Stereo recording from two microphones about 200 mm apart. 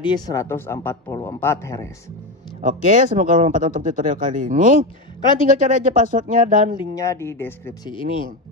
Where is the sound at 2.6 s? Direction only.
40° right (ahead or behind).